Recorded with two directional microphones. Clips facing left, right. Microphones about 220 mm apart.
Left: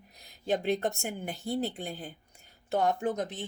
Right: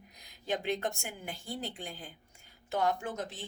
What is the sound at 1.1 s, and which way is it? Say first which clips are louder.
Speech: left 7 dB; 55° left (ahead or behind).